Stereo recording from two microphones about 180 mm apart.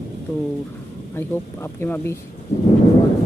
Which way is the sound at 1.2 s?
10° left (ahead or behind).